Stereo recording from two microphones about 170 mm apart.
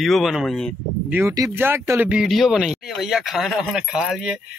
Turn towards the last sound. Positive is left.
turn(degrees=0)  # may be behind; listen again after turning